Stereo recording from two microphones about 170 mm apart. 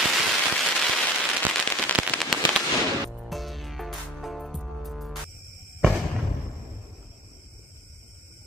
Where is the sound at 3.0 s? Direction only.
Centre (ahead or behind).